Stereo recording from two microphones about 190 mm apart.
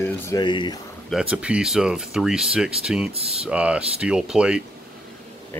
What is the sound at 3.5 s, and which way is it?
Speech, 5° right (ahead or behind).